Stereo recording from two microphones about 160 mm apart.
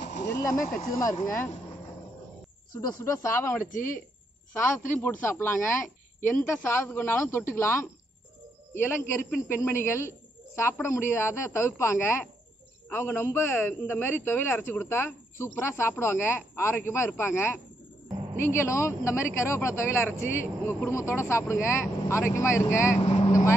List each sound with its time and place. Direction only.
0.0 s a sound: 90° left
0.7 s a man's voice: 20° left (ahead or behind)
2.7 s speech: 25° left (ahead or behind)
3.6 s speech: 55° left (ahead or behind)
4.6 s a man's voice: 15° left (ahead or behind)
23.0 s vehicle: 40° left (ahead or behind)